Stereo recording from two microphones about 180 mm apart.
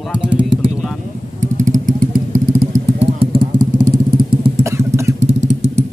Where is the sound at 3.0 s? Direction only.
30° right (ahead or behind).